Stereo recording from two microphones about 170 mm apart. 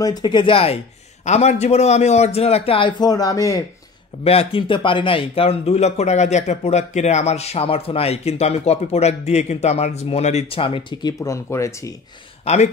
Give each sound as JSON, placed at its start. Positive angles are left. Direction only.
{"t": 0.0, "sound": "speech", "side_deg": 25}
{"t": 4.2, "sound": "speech", "side_deg": 35}
{"t": 12.5, "sound": "speech", "side_deg": 40}